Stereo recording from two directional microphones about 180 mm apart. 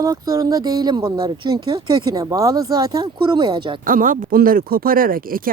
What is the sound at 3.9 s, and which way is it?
Speech, 50° right (ahead or behind).